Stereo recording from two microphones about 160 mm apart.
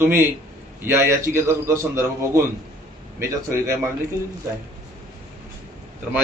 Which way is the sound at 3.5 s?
15° right (ahead or behind).